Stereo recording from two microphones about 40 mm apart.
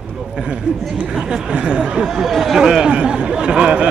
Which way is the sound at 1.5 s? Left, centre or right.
Right.